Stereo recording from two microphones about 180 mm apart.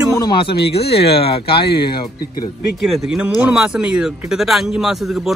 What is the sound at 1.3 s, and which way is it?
Speech, 30° left (ahead or behind).